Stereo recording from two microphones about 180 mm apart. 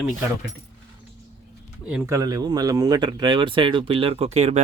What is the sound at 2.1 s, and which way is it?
Speech, 20° right (ahead or behind).